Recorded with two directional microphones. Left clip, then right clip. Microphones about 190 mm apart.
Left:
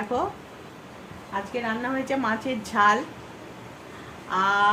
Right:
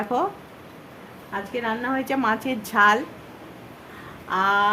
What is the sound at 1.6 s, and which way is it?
A woman's voice, 35° right (ahead or behind).